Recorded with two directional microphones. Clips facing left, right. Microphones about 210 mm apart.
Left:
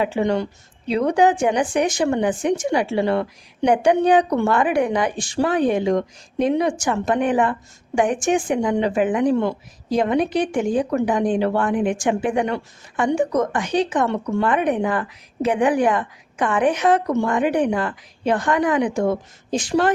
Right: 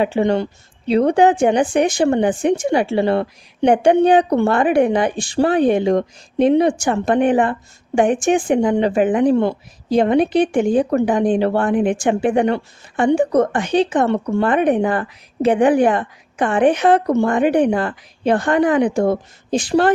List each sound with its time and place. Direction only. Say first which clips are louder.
0.0 s speech: right 3 dB; 30° right (ahead or behind)